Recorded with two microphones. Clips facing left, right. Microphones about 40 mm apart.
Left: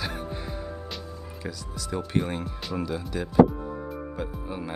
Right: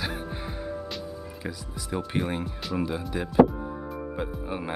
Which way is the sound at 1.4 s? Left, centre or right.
Centre.